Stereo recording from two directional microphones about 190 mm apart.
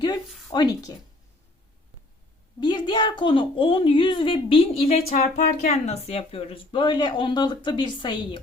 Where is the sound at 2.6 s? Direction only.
25° left (ahead or behind).